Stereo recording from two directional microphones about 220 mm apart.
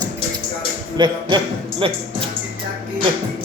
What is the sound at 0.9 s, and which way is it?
A man's voice, 20° right (ahead or behind).